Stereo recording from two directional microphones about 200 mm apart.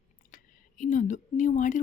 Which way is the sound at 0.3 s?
40° left (ahead or behind).